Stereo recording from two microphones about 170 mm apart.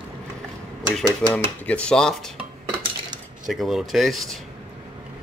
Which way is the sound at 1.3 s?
5° left (ahead or behind).